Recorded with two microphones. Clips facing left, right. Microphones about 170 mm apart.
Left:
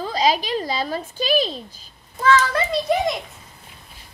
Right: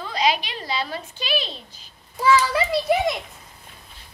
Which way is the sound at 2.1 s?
10° right (ahead or behind).